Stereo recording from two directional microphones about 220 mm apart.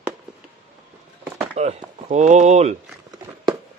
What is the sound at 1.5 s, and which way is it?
Speech, 30° right (ahead or behind).